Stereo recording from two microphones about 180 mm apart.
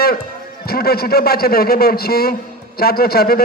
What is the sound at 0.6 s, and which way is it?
A man's voice, 60° left (ahead or behind).